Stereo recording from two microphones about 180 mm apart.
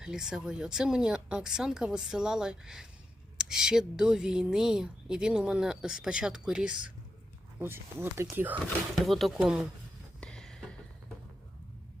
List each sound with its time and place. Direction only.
0.0 s a woman's voice: 5° right (ahead or behind)
9.0 s a woman's voice: centre (ahead or behind)
10.2 s a sound: 5° left (ahead or behind)